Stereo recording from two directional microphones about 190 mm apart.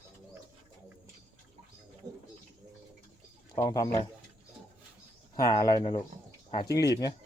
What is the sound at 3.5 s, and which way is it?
Speech, 20° left (ahead or behind).